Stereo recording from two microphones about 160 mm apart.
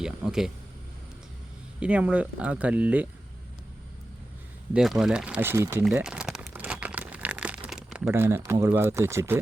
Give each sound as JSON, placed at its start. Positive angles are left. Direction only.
{"t": 0.0, "sound": "speech", "side_deg": -5}
{"t": 1.8, "sound": "speech", "side_deg": -5}
{"t": 4.7, "sound": "speech", "side_deg": -5}
{"t": 5.8, "sound": "crumpling", "side_deg": -5}
{"t": 8.1, "sound": "speech", "side_deg": -15}